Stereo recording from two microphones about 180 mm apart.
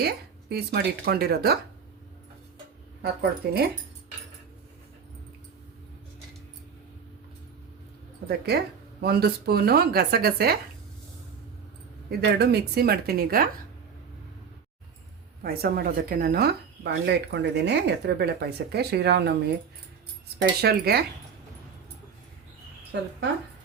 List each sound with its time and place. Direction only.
0.0 s speech: 65° right (ahead or behind)
3.0 s speech: 60° right (ahead or behind)
8.3 s speech: 60° right (ahead or behind)
12.4 s speech: 65° right (ahead or behind)
15.4 s speech: 55° right (ahead or behind)
20.4 s speech: 60° right (ahead or behind)